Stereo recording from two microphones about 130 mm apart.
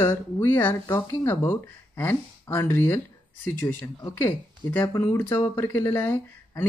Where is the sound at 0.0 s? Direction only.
20° left (ahead or behind).